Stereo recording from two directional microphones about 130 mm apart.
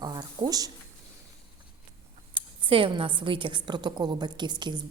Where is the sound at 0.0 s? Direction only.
30° right (ahead or behind).